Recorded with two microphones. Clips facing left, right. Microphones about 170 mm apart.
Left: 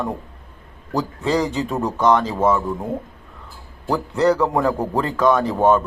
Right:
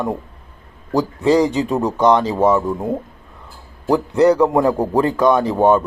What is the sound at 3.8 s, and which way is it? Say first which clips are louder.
A man's voice: right 4 dB; 15° right (ahead or behind).